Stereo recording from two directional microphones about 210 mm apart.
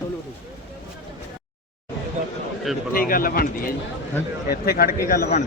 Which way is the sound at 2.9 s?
40° left (ahead or behind).